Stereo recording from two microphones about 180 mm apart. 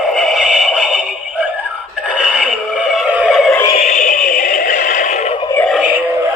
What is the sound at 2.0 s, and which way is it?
Synthetic singing, 5° right (ahead or behind).